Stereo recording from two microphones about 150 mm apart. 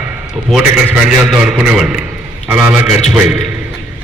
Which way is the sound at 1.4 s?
5° right (ahead or behind).